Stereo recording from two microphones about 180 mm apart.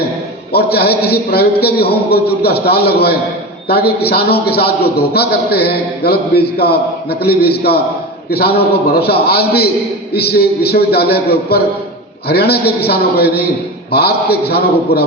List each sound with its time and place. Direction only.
0.5 s a man's voice: 60° left (ahead or behind)